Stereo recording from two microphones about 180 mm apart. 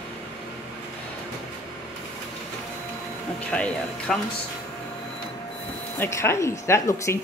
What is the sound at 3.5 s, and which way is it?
Speech, 5° left (ahead or behind).